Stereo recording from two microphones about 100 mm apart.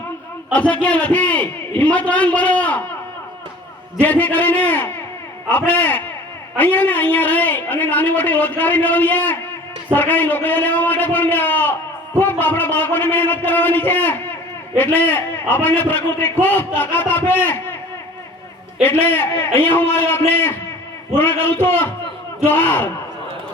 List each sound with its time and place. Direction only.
0.5 s a man's voice: 15° left (ahead or behind)
4.0 s a man's voice: 15° left (ahead or behind)
18.8 s a man's voice: 20° left (ahead or behind)